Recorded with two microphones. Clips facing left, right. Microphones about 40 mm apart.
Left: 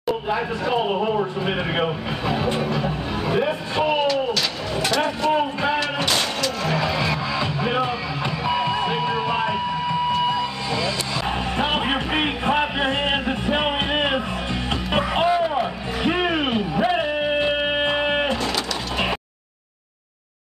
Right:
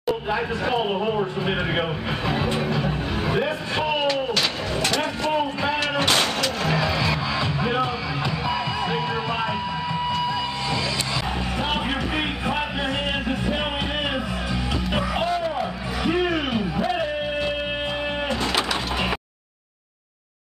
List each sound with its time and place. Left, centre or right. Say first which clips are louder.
0.0 s speech: left 1 dB; centre
4.1 s a sound: left 1 dB; centre
4.7 s vehicle: left 4 dB; centre
5.8 s a sound: right 1 dB; right
6.8 s music: left 1 dB; centre
9.3 s a sound: left 3 dB; centre
10.1 s music: left 3 dB; left
11.5 s music: left 3 dB; left
15.3 s music: left 4 dB; centre
15.6 s music: left 2 dB; left